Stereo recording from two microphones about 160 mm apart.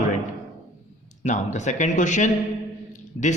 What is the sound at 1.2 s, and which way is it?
Speech, 50° left (ahead or behind).